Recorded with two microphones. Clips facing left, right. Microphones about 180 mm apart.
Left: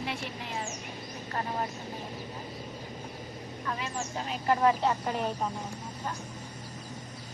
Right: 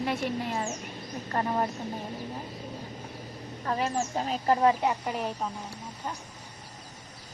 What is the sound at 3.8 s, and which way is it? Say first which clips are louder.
Speech: right 6 dB; 45° right (ahead or behind).